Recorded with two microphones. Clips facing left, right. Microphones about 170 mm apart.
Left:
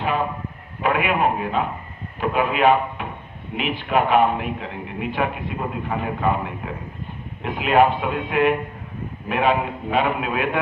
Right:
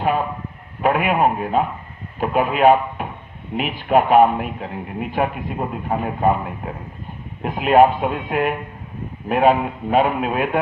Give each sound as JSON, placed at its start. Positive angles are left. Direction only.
{"t": 0.8, "sound": "a man's voice", "side_deg": -45}